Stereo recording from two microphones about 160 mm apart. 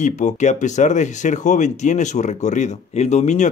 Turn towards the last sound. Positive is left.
turn(degrees=45)  # may be behind; listen again after turning